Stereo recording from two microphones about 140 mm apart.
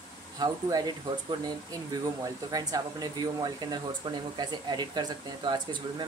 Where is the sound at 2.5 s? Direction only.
30° right (ahead or behind).